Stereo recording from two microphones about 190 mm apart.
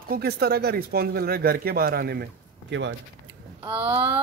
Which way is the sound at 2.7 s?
70° right (ahead or behind).